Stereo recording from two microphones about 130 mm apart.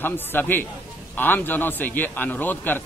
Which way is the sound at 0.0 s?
15° left (ahead or behind).